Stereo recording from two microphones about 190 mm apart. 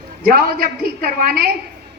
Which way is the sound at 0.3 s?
50° right (ahead or behind).